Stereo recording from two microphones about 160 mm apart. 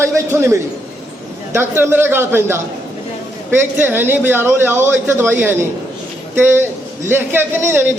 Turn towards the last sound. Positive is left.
turn(degrees=-15)  # may be behind; listen again after turning